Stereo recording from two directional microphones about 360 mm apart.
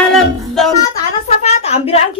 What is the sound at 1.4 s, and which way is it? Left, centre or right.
Speech, centre.